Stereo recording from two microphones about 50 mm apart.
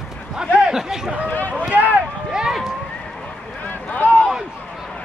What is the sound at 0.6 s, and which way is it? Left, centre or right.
Speech, centre.